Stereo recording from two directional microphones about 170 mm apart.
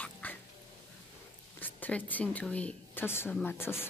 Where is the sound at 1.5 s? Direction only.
10° left (ahead or behind).